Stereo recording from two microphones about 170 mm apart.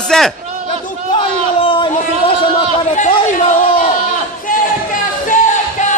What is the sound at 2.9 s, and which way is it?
Chatter, 45° left (ahead or behind).